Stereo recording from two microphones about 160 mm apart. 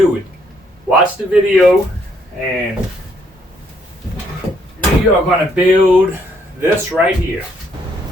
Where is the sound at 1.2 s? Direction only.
5° right (ahead or behind).